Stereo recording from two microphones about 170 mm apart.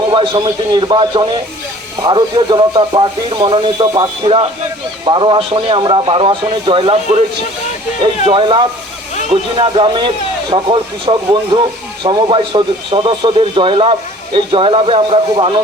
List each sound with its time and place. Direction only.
0.1 s a man's voice: 30° right (ahead or behind)